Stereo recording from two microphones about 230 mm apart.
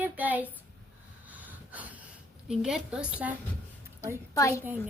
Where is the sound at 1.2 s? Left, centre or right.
Centre.